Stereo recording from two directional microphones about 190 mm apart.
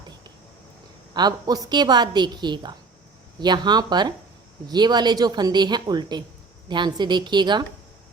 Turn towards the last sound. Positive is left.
turn(degrees=-25)  # may be behind; listen again after turning